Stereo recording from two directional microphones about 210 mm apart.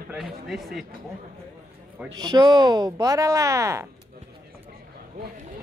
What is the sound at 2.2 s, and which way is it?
Speech, 20° right (ahead or behind).